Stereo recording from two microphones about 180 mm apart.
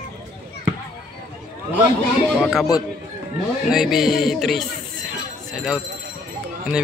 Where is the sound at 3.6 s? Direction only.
Centre (ahead or behind).